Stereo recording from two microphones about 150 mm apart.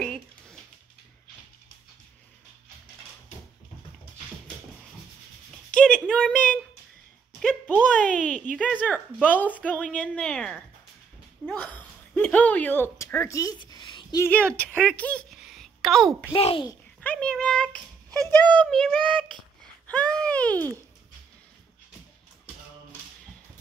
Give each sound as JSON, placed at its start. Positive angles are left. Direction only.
{"t": 0.0, "sound": "a sound", "side_deg": 5}
{"t": 5.7, "sound": "a sound", "side_deg": 5}
{"t": 8.7, "sound": "a woman's voice", "side_deg": 10}
{"t": 14.2, "sound": "a woman's voice", "side_deg": 10}
{"t": 15.3, "sound": "a sound", "side_deg": 0}
{"t": 16.3, "sound": "a child's voice", "side_deg": 40}
{"t": 17.0, "sound": "a woman's voice", "side_deg": 10}
{"t": 18.1, "sound": "speech", "side_deg": -25}
{"t": 18.4, "sound": "a woman's voice", "side_deg": 10}